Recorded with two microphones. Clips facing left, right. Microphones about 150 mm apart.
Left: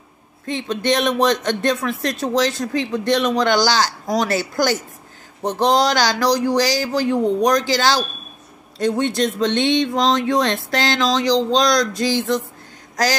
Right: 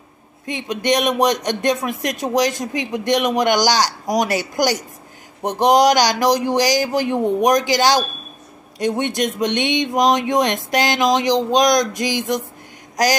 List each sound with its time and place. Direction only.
0.5 s speech: 15° right (ahead or behind)